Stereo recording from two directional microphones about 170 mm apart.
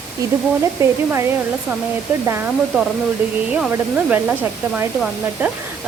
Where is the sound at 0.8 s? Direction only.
15° right (ahead or behind).